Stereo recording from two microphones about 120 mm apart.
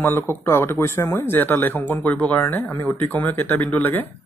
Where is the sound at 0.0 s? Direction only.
15° left (ahead or behind).